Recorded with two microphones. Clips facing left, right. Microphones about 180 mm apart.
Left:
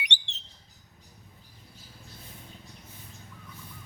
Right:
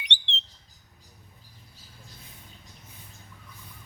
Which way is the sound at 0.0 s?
10° left (ahead or behind).